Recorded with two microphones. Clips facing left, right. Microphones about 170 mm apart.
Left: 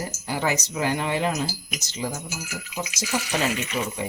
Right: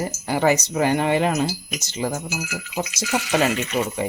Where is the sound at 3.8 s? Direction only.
45° right (ahead or behind).